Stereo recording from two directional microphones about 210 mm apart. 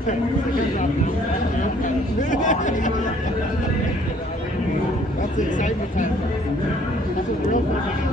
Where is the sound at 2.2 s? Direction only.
35° left (ahead or behind).